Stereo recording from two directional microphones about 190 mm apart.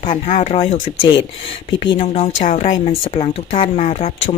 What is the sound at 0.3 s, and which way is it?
A woman's voice, 35° left (ahead or behind).